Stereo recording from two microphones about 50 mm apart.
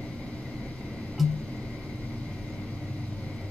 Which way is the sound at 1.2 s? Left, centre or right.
Centre.